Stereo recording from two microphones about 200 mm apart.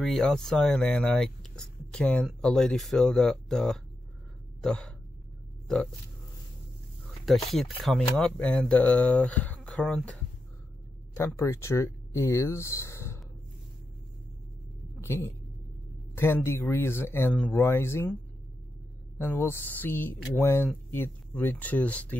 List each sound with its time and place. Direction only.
0.0 s speech: centre (ahead or behind)
7.3 s speech: centre (ahead or behind)
11.1 s speech: 15° left (ahead or behind)
15.0 s speech: 15° left (ahead or behind)
19.2 s speech: 10° left (ahead or behind)